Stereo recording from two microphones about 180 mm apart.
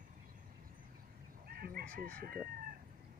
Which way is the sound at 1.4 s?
55° right (ahead or behind).